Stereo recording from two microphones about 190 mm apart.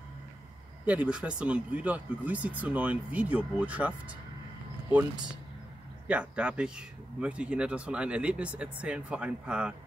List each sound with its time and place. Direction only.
0.8 s speech: 5° right (ahead or behind)
6.0 s speech: 5° right (ahead or behind)